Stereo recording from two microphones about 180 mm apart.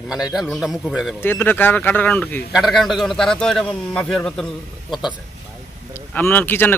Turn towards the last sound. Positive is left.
turn(degrees=10)  # may be behind; listen again after turning